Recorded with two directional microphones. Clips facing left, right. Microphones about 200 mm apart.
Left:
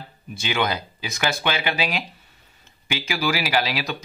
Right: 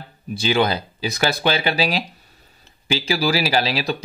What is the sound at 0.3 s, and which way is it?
Speech, 35° right (ahead or behind).